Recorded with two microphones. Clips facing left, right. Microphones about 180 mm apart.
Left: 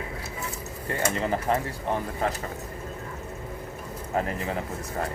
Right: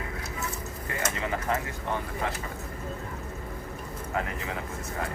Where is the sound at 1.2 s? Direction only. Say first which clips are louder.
Left 2 dB; 35° left (ahead or behind).